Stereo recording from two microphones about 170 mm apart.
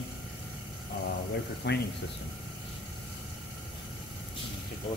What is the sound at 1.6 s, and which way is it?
Speech, 85° left.